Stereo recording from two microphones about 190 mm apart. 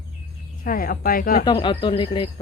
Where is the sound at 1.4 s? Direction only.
25° left (ahead or behind).